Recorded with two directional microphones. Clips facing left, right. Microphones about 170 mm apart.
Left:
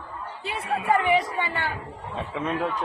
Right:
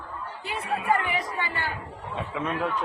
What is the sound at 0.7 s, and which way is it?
Speech, 25° left (ahead or behind).